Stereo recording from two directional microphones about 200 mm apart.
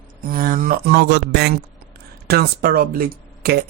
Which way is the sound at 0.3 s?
45° right (ahead or behind).